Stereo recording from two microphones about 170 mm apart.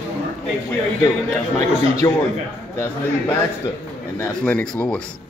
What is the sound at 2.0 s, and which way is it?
Speech, 20° left (ahead or behind).